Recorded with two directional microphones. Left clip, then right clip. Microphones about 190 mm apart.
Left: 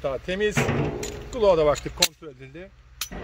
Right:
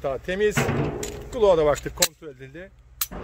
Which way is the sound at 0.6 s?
5° left (ahead or behind).